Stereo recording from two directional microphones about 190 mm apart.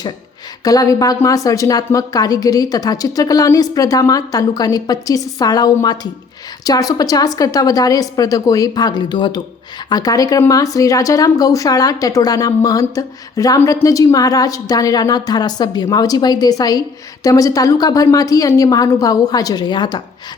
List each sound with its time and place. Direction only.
0.6 s speech: 20° left (ahead or behind)